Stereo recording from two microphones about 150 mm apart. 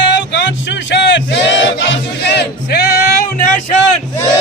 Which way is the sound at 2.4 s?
90° left.